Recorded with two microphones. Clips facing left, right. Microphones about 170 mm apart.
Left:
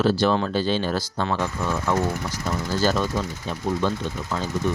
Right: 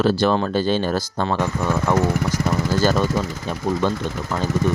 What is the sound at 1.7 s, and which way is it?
Speech, 80° right.